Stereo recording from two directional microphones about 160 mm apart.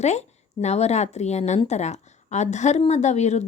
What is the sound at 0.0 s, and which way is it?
Speech, 45° left (ahead or behind).